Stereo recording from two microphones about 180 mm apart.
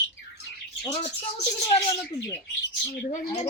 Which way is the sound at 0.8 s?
35° left (ahead or behind).